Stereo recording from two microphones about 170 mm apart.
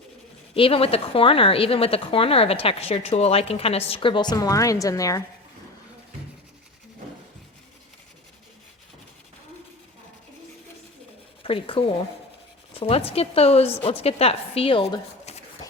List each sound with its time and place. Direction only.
0.5 s a woman's voice: 35° left (ahead or behind)
11.4 s a woman's voice: 30° left (ahead or behind)